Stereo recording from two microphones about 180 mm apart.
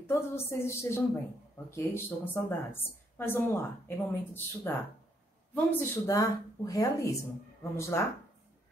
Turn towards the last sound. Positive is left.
turn(degrees=15)  # may be behind; listen again after turning